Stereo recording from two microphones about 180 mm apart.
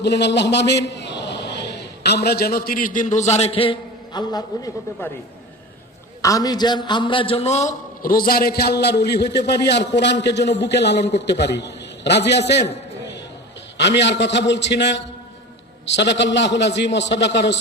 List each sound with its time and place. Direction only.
0.0 s a man's voice: 70° left (ahead or behind); by 4.7 s 20° left (ahead or behind)
6.2 s a man's voice: 20° left (ahead or behind); by 12.4 s 70° left (ahead or behind)
12.6 s a sound: 75° left (ahead or behind)
13.7 s a man's voice: 70° left (ahead or behind)